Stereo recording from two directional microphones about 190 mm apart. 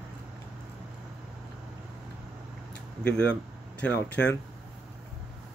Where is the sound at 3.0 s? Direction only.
5° left (ahead or behind).